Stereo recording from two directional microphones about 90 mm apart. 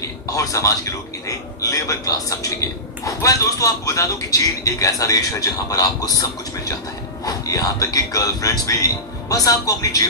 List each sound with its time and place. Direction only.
0.0 s a man's voice: 40° left (ahead or behind)
7.2 s a man's voice: 40° left (ahead or behind)